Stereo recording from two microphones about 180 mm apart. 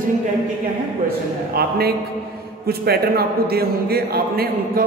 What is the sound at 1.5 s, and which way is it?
A man's voice, 60° right (ahead or behind).